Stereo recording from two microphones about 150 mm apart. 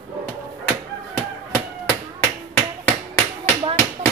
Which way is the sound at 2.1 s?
10° left (ahead or behind).